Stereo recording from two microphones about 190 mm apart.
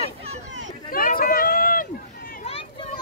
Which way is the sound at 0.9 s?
50° left (ahead or behind).